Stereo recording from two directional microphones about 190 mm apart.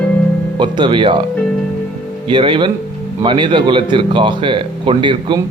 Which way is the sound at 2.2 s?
25° right (ahead or behind).